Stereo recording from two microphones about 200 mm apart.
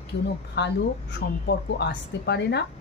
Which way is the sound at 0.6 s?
55° left (ahead or behind).